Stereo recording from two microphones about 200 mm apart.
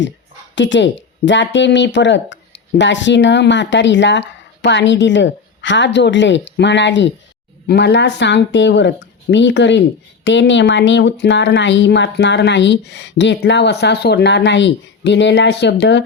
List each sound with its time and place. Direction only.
0.5 s speech: 65° left (ahead or behind)